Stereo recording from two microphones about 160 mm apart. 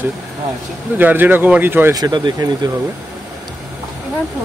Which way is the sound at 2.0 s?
25° right (ahead or behind).